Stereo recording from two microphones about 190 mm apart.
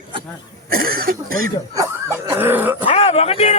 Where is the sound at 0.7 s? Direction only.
50° right (ahead or behind).